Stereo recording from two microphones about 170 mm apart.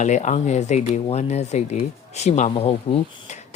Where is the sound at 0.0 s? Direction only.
45° left (ahead or behind).